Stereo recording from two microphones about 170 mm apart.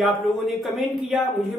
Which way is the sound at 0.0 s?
Centre (ahead or behind).